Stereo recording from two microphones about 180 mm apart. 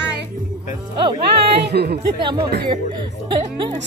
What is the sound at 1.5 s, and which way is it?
Speech, 65° right (ahead or behind).